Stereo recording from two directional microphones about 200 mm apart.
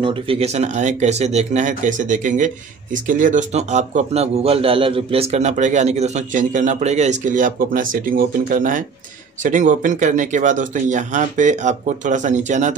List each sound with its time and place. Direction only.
0.0 s speech: 25° right (ahead or behind)